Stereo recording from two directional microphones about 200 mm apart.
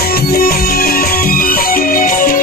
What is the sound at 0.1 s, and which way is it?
Music, 50° left (ahead or behind).